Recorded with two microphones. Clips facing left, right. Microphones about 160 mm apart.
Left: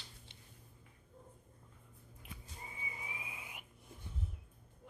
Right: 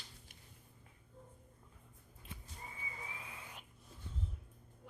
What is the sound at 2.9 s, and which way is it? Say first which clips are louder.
Whistle: left 1 dB; 15° left (ahead or behind).